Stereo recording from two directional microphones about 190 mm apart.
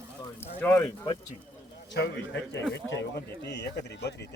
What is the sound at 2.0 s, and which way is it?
A man's voice, 65° left (ahead or behind).